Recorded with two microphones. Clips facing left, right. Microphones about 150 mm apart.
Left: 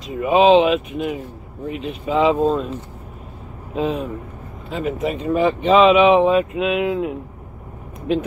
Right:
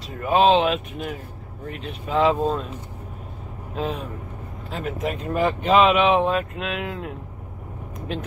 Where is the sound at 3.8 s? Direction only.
Centre (ahead or behind).